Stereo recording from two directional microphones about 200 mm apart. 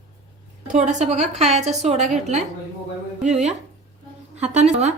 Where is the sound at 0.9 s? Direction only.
35° right (ahead or behind).